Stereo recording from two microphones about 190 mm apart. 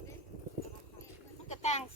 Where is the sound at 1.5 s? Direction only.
35° left (ahead or behind).